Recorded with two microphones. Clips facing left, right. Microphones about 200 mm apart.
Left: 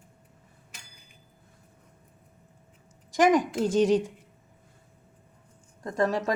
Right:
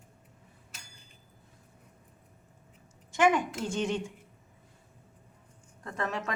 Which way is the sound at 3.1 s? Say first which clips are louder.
Left 4 dB; 35° left (ahead or behind).